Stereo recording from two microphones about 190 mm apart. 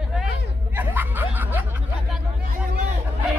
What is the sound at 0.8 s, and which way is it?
Snicker, 10° right (ahead or behind).